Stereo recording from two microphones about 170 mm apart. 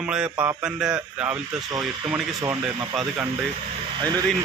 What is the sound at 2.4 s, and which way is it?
Speech, 15° right (ahead or behind).